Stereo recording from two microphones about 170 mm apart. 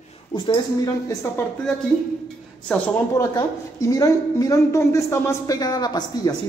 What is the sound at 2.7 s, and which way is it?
Speech, 5° left (ahead or behind).